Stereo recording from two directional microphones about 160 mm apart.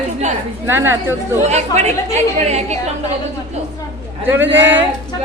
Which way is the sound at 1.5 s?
45° right (ahead or behind).